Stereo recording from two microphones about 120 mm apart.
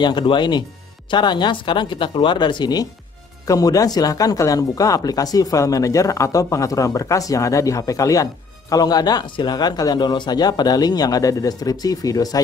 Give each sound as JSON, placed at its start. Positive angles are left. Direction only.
{"t": 0.0, "sound": "speech", "side_deg": 40}